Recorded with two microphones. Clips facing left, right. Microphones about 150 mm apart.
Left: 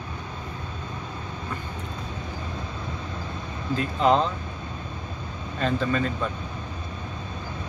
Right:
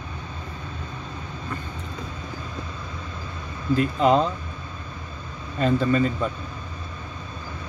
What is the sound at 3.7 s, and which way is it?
Speech, 5° right (ahead or behind).